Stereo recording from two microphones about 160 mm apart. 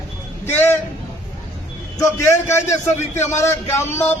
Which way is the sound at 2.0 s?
15° left (ahead or behind).